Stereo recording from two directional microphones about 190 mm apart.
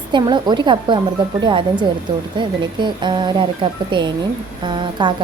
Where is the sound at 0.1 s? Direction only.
25° right (ahead or behind).